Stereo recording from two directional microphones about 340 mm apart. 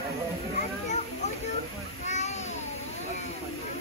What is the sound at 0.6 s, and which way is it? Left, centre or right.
Children playing, left.